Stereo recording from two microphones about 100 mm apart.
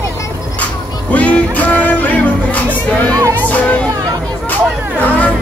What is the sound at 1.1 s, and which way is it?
Music, 15° left (ahead or behind).